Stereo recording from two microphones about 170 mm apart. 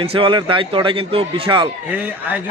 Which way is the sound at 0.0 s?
35° right (ahead or behind).